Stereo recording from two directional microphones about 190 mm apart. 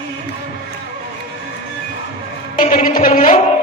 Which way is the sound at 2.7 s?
45° left (ahead or behind).